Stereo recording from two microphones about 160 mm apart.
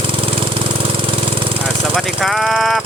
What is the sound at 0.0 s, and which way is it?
Engine, 35° right (ahead or behind).